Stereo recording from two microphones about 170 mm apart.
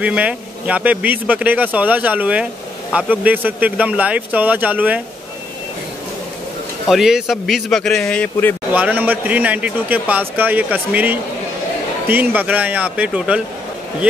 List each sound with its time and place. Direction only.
0.0 s speech: 5° right (ahead or behind)
6.9 s a man's voice: centre (ahead or behind)
8.7 s speech: 10° right (ahead or behind)